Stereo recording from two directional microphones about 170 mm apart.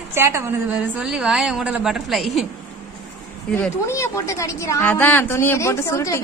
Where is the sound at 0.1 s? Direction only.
15° right (ahead or behind).